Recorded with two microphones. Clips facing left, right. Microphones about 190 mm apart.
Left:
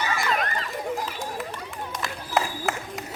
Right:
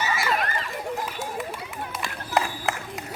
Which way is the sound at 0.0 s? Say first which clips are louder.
Even; 5° right (ahead or behind).